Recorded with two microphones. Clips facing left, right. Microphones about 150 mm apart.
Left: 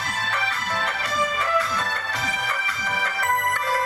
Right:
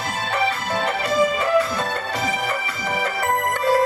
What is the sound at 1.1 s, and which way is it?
Music, 25° right (ahead or behind).